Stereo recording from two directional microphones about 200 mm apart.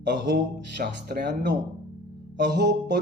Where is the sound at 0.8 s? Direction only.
50° right (ahead or behind).